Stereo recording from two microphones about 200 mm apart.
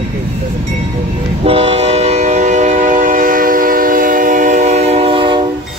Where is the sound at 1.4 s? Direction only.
30° right (ahead or behind).